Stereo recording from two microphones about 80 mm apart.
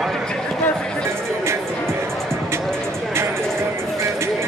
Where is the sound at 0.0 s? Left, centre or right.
Centre.